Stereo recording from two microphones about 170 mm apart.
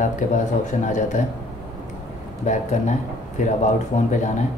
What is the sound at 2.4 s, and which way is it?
Speech, 45° left (ahead or behind).